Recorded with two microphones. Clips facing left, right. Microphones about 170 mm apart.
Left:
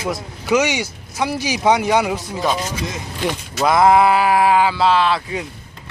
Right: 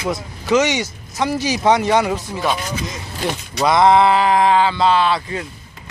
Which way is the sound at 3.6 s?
5° left (ahead or behind).